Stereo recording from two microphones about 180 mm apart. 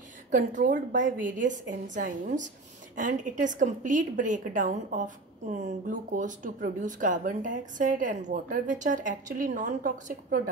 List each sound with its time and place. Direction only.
0.7 s a woman's voice: 80° right
1.2 s a woman's voice: 45° right (ahead or behind)